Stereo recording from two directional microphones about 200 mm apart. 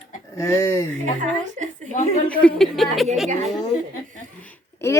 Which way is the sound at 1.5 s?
35° right (ahead or behind).